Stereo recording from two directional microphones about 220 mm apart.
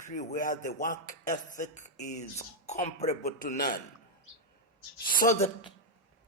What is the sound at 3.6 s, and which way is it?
Speech, 45° left (ahead or behind).